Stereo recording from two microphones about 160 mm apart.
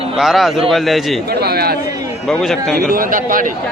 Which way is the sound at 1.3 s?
80° right.